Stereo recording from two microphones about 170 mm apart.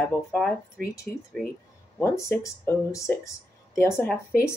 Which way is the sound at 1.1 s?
10° left (ahead or behind).